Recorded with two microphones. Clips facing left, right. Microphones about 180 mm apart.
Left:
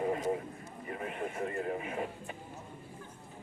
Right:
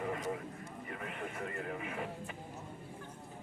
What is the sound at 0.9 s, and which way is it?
Speech, 25° left (ahead or behind).